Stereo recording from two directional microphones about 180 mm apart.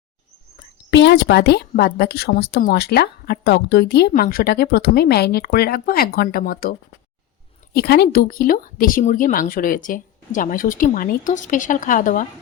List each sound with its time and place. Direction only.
0.9 s speech: 70° left (ahead or behind)
4.1 s speech: 55° left (ahead or behind)